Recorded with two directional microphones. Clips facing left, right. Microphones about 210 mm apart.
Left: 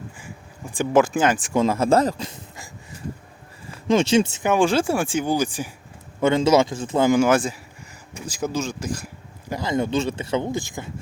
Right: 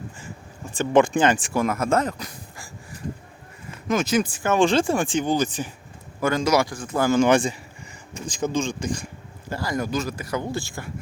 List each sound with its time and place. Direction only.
0.7 s speech: 10° left (ahead or behind)
1.5 s speech: 25° left (ahead or behind)
3.8 s speech: 30° left (ahead or behind)
4.5 s speech: 10° left (ahead or behind)
6.1 s speech: 25° left (ahead or behind)
7.2 s speech: 5° left (ahead or behind)
9.5 s speech: 20° left (ahead or behind)